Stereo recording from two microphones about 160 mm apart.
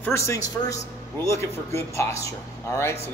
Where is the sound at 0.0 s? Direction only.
20° left (ahead or behind).